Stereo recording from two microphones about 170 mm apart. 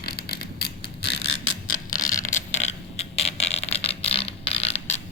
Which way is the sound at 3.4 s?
40° left (ahead or behind).